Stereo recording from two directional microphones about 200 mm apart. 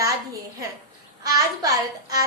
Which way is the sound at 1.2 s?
15° right (ahead or behind).